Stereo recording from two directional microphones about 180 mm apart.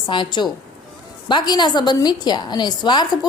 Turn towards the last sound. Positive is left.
turn(degrees=25)  # may be behind; listen again after turning